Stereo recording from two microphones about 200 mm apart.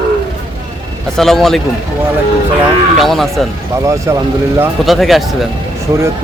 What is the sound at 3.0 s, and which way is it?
Speech, centre (ahead or behind).